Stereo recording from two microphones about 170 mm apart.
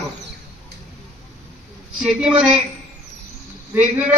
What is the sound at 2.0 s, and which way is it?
Speech, 5° right (ahead or behind).